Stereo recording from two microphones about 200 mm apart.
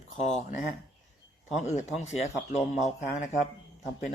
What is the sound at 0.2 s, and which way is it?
Speech, 35° left (ahead or behind).